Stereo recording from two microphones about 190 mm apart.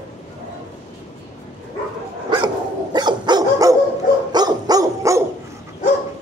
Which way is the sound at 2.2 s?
25° right (ahead or behind).